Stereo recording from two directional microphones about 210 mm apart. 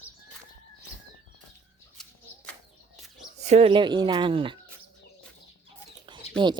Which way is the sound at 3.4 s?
30° right (ahead or behind).